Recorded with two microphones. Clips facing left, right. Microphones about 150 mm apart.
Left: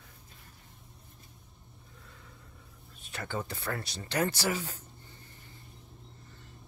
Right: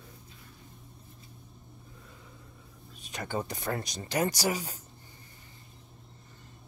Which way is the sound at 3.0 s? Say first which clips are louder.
Right 3 dB; 15° right (ahead or behind).